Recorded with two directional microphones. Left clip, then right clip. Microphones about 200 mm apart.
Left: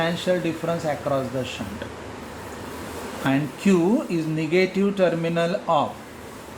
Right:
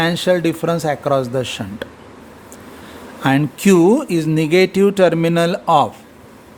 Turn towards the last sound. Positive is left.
turn(degrees=-60)  # may be behind; listen again after turning